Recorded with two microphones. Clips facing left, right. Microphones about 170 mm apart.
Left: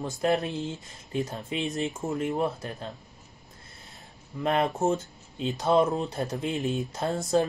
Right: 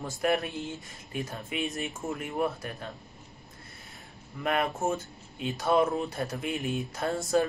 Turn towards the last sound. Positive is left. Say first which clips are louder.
# left 2 dB
turn(degrees=25)  # may be behind; listen again after turning